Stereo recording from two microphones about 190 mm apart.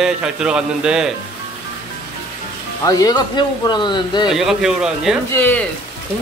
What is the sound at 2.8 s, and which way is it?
Speech, 20° left (ahead or behind).